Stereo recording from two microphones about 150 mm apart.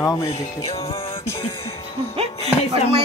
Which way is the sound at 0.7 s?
40° left (ahead or behind).